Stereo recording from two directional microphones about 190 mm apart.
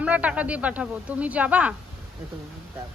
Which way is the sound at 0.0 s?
5° right (ahead or behind).